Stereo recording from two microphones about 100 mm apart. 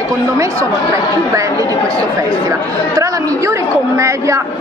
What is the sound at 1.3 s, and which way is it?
A woman's voice, 35° right (ahead or behind).